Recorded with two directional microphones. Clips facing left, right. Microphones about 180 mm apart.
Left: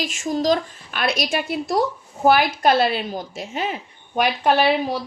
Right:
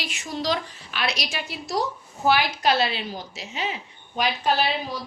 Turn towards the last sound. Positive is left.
turn(degrees=65)  # may be behind; listen again after turning